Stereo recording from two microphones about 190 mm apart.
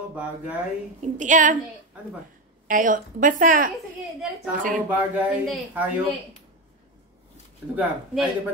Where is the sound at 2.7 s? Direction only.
45° right (ahead or behind).